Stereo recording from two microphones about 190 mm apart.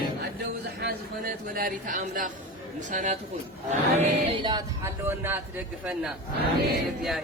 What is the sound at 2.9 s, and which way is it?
Music, 40° right (ahead or behind).